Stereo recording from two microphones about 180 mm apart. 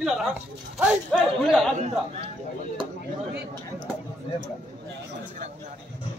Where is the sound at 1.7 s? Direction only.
40° right (ahead or behind).